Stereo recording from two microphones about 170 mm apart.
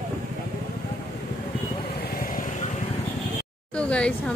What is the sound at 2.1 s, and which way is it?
Vehicle, 55° left (ahead or behind).